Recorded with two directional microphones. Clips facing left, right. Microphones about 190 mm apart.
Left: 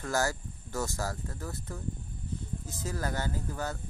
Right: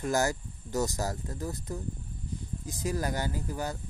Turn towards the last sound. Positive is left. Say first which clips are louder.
# right 1 dB
turn(degrees=-15)  # may be behind; listen again after turning